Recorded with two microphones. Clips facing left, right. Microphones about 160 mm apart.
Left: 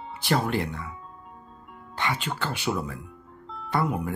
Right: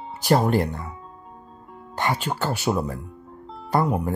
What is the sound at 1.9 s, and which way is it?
Speech, 40° right (ahead or behind).